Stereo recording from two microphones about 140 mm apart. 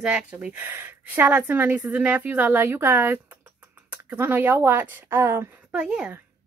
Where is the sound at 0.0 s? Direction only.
5° right (ahead or behind).